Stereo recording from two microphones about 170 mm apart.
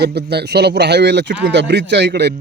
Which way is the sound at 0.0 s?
70° right (ahead or behind).